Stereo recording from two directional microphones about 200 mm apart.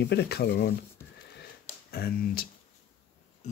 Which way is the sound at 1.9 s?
50° left (ahead or behind).